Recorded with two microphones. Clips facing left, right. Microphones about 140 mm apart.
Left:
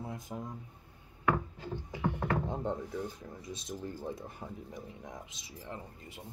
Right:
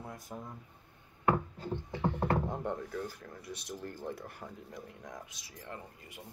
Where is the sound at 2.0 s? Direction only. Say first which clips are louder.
Right 1 dB; 25° right (ahead or behind).